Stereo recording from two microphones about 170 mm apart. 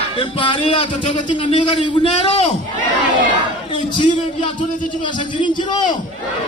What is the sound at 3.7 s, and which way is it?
Speech, 30° left (ahead or behind).